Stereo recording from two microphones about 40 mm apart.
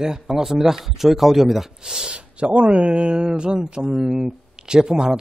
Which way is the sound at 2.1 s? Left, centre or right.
Right.